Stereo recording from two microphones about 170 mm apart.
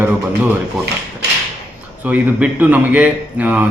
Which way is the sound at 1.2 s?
80° right.